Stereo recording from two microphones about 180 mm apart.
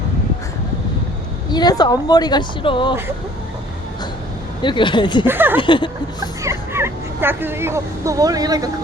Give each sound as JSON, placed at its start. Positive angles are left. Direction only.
{"t": 1.5, "sound": "speech", "side_deg": 25}
{"t": 4.6, "sound": "speech", "side_deg": 25}
{"t": 5.2, "sound": "speech", "side_deg": -10}
{"t": 5.5, "sound": "speech", "side_deg": 25}
{"t": 6.1, "sound": "speech", "side_deg": -15}